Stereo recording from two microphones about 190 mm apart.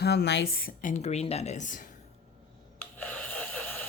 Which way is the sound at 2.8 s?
10° left (ahead or behind).